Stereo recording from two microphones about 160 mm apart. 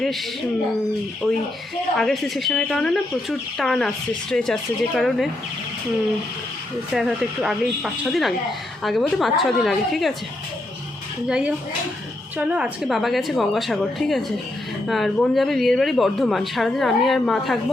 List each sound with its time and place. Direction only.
2.0 s speech: centre (ahead or behind)
6.9 s speech: 5° right (ahead or behind)
11.3 s speech: 5° right (ahead or behind)